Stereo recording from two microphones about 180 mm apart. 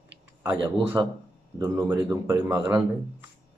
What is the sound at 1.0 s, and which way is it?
Speech, 20° right (ahead or behind).